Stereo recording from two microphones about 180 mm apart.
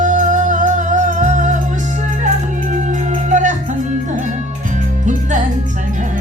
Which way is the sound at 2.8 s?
45° right (ahead or behind).